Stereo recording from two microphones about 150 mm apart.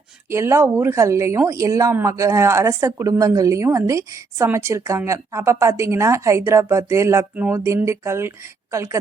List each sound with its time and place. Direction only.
0.3 s a woman's voice: 15° right (ahead or behind)